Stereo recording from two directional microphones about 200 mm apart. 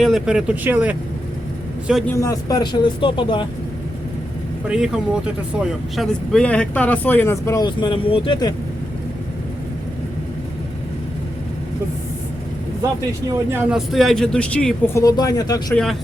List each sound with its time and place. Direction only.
0.0 s speech: centre (ahead or behind)
2.1 s speech: 15° left (ahead or behind)
4.7 s speech: 5° right (ahead or behind); by 8.5 s 20° left (ahead or behind)
13.5 s speech: 5° right (ahead or behind)
15.0 s speech: 20° left (ahead or behind)
15.7 s speech: 5° left (ahead or behind)